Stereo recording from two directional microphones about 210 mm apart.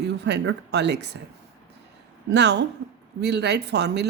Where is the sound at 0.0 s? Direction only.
50° right (ahead or behind).